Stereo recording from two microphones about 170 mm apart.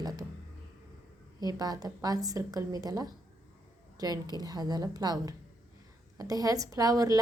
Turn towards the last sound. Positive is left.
turn(degrees=-20)  # may be behind; listen again after turning